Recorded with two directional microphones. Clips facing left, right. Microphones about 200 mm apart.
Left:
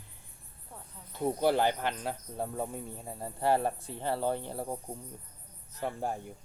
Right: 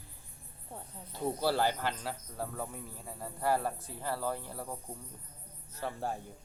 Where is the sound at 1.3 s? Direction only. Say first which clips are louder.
Left 3 dB; 20° left (ahead or behind).